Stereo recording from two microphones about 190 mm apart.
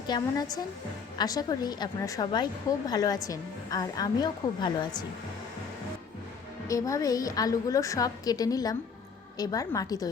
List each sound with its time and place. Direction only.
0.1 s a woman's voice: 20° left (ahead or behind)
6.7 s a woman's voice: 15° left (ahead or behind)